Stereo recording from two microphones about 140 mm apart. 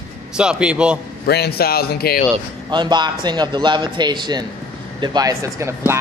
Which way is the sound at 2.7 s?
30° right (ahead or behind).